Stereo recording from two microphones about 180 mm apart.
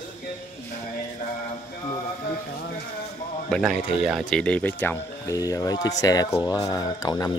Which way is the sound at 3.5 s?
Centre (ahead or behind).